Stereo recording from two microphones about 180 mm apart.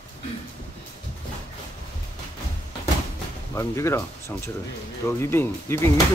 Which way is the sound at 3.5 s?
15° left (ahead or behind).